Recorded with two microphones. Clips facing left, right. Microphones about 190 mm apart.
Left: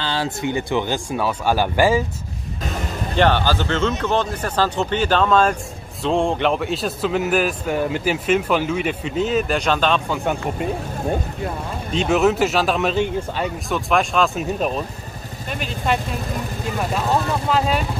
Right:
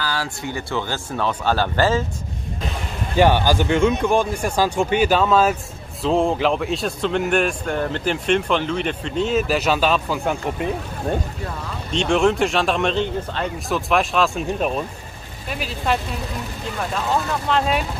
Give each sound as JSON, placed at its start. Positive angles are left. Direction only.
{"t": 0.0, "sound": "speech", "side_deg": 25}
{"t": 3.2, "sound": "a man's voice", "side_deg": -10}
{"t": 11.9, "sound": "a man's voice", "side_deg": 5}
{"t": 13.7, "sound": "a man's voice", "side_deg": 0}